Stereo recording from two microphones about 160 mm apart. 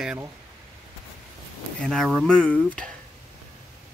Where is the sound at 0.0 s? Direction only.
5° right (ahead or behind).